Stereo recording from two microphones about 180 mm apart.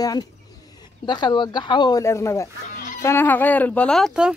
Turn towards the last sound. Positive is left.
turn(degrees=0)  # may be behind; listen again after turning